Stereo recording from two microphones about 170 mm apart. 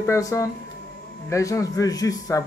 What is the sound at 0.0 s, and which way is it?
A man's voice, 20° left (ahead or behind).